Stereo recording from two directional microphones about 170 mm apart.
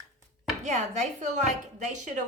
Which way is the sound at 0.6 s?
45° right (ahead or behind).